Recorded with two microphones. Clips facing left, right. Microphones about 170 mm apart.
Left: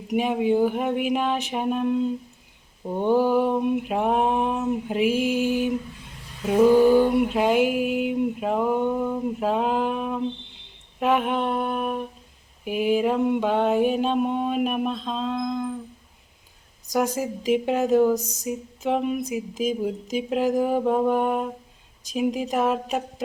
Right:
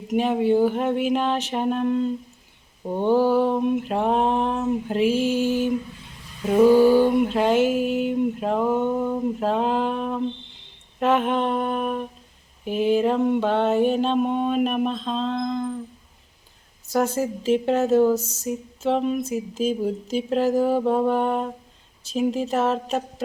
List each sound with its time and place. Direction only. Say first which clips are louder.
0.1 s mantra: right 2 dB; 10° left (ahead or behind)
2.8 s humming: right 1 dB; 5° right (ahead or behind)
3.3 s mantra: right 1 dB; 10° left (ahead or behind)
6.4 s humming: right 1 dB; 5° left (ahead or behind)
7.2 s mantra: right 1 dB; 5° left (ahead or behind)
11.0 s humming: right 2 dB; 10° left (ahead or behind)
12.6 s mantra: right 2 dB; 10° left (ahead or behind)
16.8 s mantra: right 2 dB; 15° left (ahead or behind)